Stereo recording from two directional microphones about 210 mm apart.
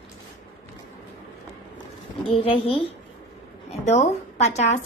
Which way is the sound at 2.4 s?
25° left (ahead or behind).